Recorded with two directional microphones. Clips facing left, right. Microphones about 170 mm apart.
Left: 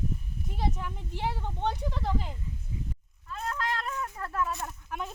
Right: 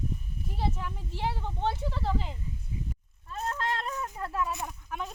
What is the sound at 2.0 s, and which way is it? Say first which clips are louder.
Speech: right 1 dB; 10° left (ahead or behind).